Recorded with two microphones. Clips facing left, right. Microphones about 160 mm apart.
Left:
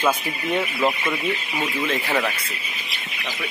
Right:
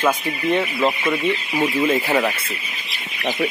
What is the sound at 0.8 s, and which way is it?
Speech, 5° left (ahead or behind).